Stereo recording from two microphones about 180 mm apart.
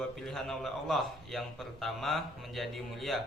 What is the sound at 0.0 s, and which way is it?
A man's voice, centre (ahead or behind).